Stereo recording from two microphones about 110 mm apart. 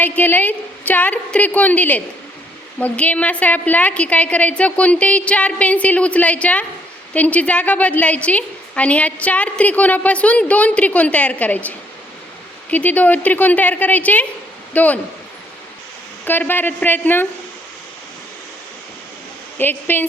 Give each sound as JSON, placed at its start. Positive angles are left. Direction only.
{"t": 0.0, "sound": "a woman's voice", "side_deg": 15}
{"t": 12.7, "sound": "a woman's voice", "side_deg": 15}
{"t": 16.2, "sound": "a woman's voice", "side_deg": 20}
{"t": 19.5, "sound": "a woman's voice", "side_deg": 20}